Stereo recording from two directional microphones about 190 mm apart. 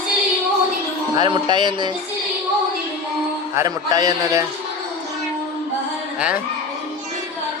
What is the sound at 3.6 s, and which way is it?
Speech, 20° right (ahead or behind).